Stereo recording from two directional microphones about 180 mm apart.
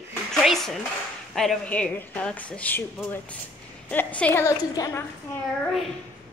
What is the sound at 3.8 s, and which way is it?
A woman's voice, 10° left (ahead or behind).